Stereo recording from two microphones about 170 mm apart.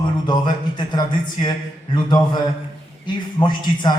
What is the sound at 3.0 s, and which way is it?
Speech, 25° left (ahead or behind).